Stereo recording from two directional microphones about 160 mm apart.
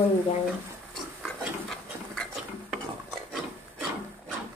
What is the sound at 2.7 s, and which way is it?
Ratchet, 5° right (ahead or behind).